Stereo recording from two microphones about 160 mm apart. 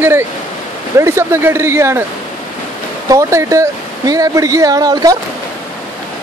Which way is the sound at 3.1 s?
20° right (ahead or behind).